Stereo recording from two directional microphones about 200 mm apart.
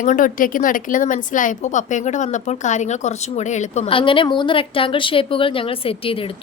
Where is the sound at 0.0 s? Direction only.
40° left (ahead or behind).